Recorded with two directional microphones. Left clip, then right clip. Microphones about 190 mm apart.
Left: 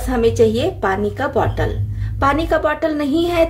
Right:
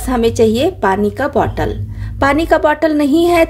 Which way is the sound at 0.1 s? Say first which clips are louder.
Right 2 dB; 45° right (ahead or behind).